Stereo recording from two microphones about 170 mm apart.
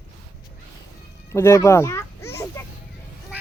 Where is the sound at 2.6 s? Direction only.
15° left (ahead or behind).